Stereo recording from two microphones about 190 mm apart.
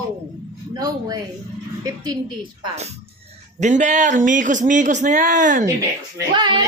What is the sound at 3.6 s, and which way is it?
Speech, 40° right (ahead or behind).